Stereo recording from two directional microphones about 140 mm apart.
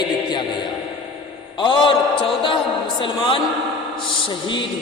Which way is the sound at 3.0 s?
35° left (ahead or behind).